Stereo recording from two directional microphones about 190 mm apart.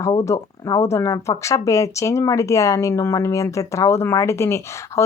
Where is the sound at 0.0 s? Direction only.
20° left (ahead or behind).